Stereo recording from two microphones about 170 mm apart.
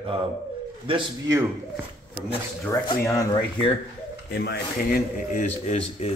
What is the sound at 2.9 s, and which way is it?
Speech, 20° left (ahead or behind).